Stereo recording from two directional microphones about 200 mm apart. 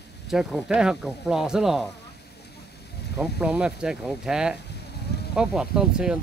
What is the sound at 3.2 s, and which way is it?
Speech, 5° right (ahead or behind).